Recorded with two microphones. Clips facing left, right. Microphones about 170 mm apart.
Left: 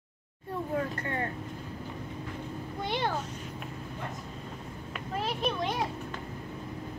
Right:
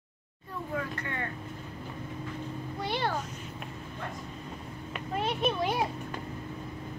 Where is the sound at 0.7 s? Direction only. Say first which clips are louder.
Left 2 dB; 40° left (ahead or behind).